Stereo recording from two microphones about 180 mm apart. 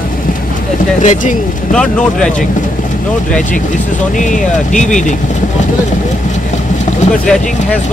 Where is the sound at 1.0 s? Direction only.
45° left (ahead or behind).